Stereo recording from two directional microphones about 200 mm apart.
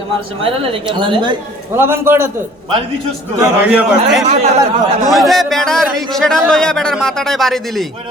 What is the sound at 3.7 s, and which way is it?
A man's voice, 5° right (ahead or behind).